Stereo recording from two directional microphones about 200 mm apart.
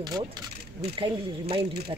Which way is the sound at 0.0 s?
20° right (ahead or behind).